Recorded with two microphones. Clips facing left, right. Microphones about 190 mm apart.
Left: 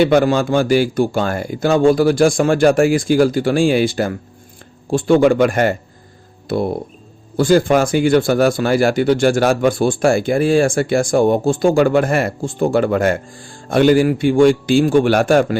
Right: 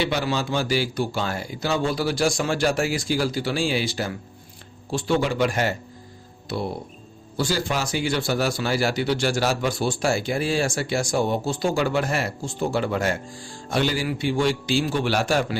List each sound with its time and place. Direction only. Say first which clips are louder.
0.0 s speech: left 11 dB; 50° left (ahead or behind)